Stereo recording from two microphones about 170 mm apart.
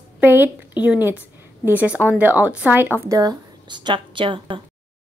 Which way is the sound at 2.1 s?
10° right (ahead or behind).